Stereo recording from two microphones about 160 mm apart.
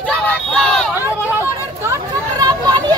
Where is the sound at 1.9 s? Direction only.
25° right (ahead or behind).